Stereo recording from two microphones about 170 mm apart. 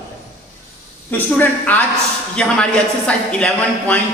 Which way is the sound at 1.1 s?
10° left (ahead or behind).